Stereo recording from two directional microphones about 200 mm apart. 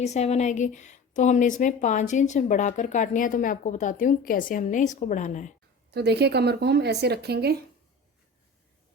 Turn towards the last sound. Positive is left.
turn(degrees=-55)  # may be behind; listen again after turning